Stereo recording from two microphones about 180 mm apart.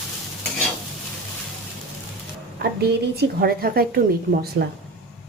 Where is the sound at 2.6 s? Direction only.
60° right (ahead or behind).